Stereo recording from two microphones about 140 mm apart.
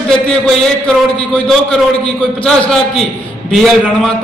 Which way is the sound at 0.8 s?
5° left (ahead or behind).